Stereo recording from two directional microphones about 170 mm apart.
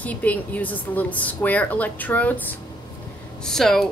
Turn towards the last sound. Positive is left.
turn(degrees=0)  # may be behind; listen again after turning